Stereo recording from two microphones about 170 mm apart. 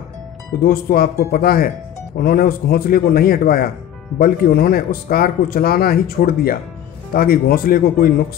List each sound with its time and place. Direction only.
0.6 s speech: 60° left (ahead or behind)